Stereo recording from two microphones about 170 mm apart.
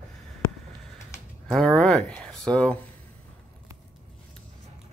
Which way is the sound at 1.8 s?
5° left (ahead or behind).